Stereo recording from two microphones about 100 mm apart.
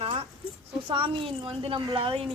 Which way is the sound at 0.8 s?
60° right (ahead or behind).